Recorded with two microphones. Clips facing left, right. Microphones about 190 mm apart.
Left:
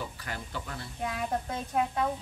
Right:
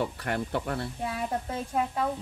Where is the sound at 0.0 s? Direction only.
65° right (ahead or behind).